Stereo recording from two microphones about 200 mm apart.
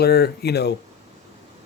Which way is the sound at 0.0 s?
50° left (ahead or behind).